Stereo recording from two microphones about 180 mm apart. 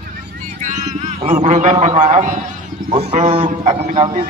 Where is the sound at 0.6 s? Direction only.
40° right (ahead or behind).